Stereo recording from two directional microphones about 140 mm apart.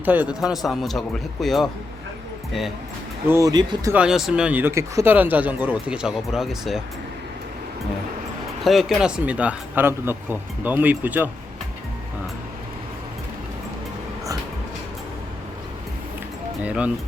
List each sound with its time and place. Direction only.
0.0 s speech: 15° right (ahead or behind)
0.6 s speech: centre (ahead or behind)
3.2 s speech: 20° right (ahead or behind)
3.9 s speech: 5° right (ahead or behind)
8.6 s speech: centre (ahead or behind)
16.6 s speech: 10° right (ahead or behind)